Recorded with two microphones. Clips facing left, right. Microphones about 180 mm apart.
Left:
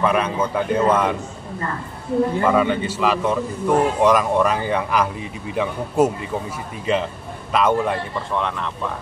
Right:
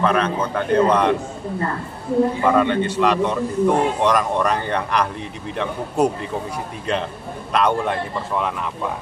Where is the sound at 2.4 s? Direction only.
5° left (ahead or behind).